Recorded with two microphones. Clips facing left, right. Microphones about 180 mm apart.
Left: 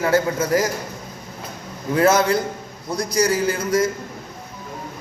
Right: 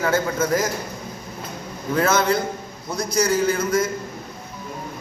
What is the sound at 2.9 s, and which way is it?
Speech, 35° left (ahead or behind).